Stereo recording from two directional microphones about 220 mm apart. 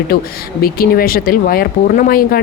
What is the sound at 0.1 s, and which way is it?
Speech, 40° left (ahead or behind).